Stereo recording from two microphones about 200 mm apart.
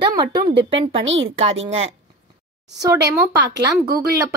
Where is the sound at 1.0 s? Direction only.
70° right (ahead or behind).